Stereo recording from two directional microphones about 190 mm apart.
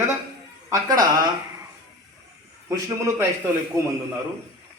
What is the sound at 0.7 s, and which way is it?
Speech, 20° right (ahead or behind).